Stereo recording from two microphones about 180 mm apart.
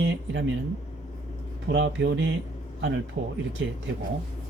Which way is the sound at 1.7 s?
75° right (ahead or behind).